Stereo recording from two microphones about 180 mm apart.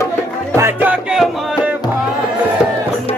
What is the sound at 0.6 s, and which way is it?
Music, 10° right (ahead or behind).